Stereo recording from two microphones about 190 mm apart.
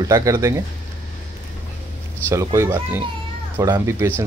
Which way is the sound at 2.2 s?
15° right (ahead or behind).